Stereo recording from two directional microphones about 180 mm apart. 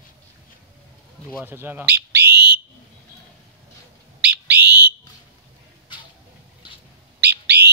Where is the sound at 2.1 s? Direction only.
65° right (ahead or behind).